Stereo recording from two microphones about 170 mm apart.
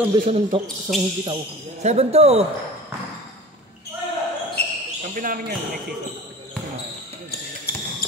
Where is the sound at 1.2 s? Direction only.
40° right (ahead or behind).